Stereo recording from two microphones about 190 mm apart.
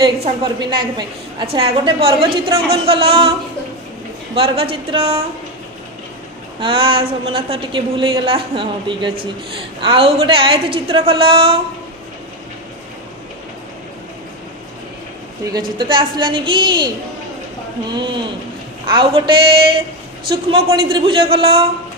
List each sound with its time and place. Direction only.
0.0 s a woman's voice: 25° right (ahead or behind)
4.4 s a woman's voice: 30° right (ahead or behind)
6.6 s a woman's voice: 30° right (ahead or behind)
15.8 s a woman's voice: 25° right (ahead or behind)
17.9 s a woman's voice: 25° right (ahead or behind)